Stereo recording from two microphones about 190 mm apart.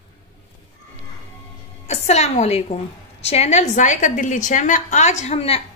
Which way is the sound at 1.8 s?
35° left (ahead or behind).